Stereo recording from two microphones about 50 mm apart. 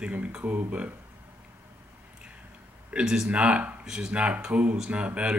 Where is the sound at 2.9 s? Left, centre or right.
Centre.